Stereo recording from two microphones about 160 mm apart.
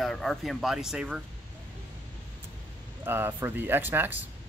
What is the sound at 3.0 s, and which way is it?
Speech, 15° right (ahead or behind).